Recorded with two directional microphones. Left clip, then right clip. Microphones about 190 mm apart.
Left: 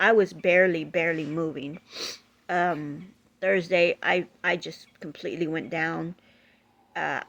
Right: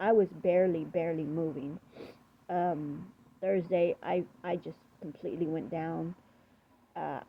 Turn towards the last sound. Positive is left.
turn(degrees=45)  # may be behind; listen again after turning